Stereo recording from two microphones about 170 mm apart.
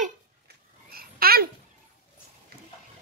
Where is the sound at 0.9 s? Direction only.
60° right (ahead or behind).